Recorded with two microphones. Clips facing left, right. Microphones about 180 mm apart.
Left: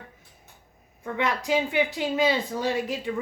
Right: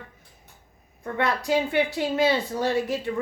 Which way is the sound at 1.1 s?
15° left (ahead or behind).